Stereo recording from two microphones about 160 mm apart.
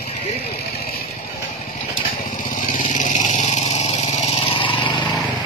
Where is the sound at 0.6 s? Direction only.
70° left (ahead or behind).